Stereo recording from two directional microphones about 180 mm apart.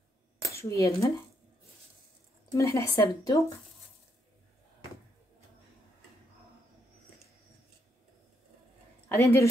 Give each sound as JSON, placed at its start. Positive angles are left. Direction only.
{"t": 0.6, "sound": "speech", "side_deg": 15}
{"t": 2.5, "sound": "speech", "side_deg": 15}
{"t": 9.1, "sound": "speech", "side_deg": 15}